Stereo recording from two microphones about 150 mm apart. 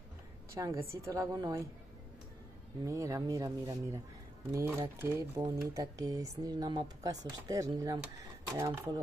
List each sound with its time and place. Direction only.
0.6 s speech: 20° right (ahead or behind)
2.8 s speech: 20° right (ahead or behind)
5.8 s speech: 25° right (ahead or behind)